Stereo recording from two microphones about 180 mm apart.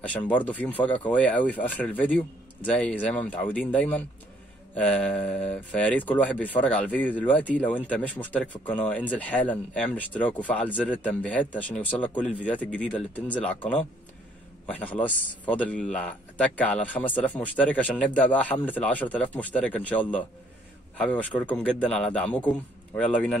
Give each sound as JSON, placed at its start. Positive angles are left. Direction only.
{"t": 0.1, "sound": "speech", "side_deg": 5}